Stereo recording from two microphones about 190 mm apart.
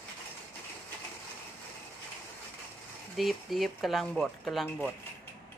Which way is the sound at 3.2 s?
Centre (ahead or behind).